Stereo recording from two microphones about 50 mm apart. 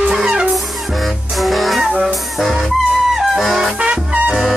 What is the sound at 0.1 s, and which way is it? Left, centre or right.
Music, centre.